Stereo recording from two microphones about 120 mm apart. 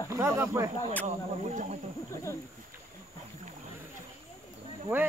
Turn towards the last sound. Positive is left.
turn(degrees=-15)  # may be behind; listen again after turning